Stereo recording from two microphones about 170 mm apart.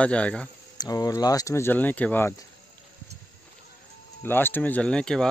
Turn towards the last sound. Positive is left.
turn(degrees=5)  # may be behind; listen again after turning